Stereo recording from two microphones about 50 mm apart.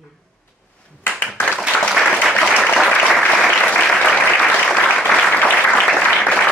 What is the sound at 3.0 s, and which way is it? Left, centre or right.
Applause, centre.